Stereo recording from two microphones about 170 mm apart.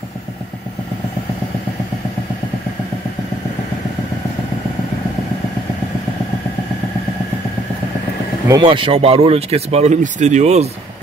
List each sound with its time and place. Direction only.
8.5 s speech: 25° right (ahead or behind)